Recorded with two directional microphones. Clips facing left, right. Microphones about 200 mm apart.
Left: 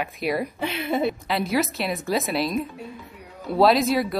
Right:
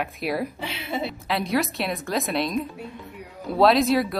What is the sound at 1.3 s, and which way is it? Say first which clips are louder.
A woman's voice: left 1 dB; centre (ahead or behind).